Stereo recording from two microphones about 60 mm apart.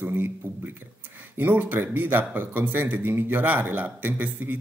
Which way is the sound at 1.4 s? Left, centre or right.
Right.